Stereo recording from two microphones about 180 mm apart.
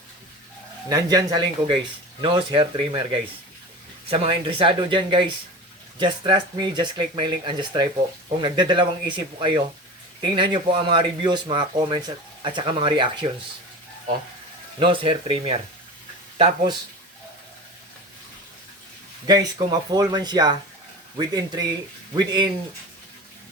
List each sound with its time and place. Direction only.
0.9 s speech: 20° right (ahead or behind)
14.8 s speech: 30° right (ahead or behind)
19.3 s speech: 20° right (ahead or behind)